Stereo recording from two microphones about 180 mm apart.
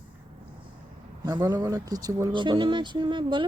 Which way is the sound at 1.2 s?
20° right (ahead or behind).